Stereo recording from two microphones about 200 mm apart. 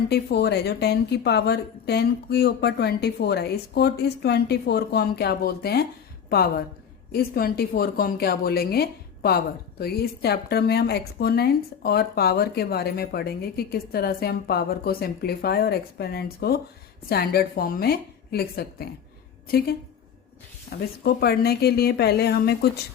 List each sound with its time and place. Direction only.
0.1 s a woman's voice: 55° left (ahead or behind)